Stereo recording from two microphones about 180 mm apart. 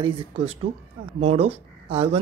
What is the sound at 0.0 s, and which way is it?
Speech, 30° right (ahead or behind).